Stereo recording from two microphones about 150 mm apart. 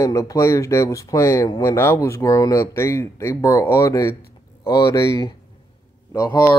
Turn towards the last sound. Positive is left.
turn(degrees=20)  # may be behind; listen again after turning